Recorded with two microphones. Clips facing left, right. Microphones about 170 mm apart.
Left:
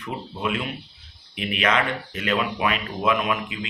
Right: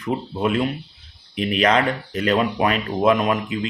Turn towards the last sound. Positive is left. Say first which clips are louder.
# right 5 dB
turn(degrees=-40)  # may be behind; listen again after turning